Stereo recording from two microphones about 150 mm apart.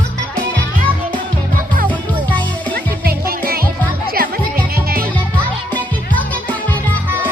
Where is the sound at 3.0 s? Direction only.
85° right.